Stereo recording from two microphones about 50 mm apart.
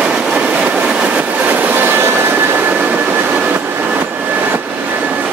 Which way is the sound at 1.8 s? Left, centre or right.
Right.